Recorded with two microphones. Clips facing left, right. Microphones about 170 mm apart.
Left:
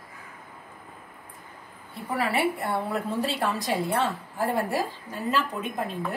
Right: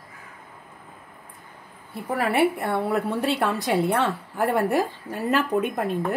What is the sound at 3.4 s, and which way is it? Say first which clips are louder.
A woman's voice: right 4 dB; 55° right (ahead or behind).